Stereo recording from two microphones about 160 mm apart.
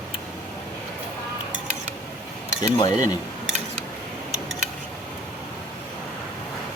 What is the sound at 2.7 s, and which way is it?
Speech, 25° left (ahead or behind).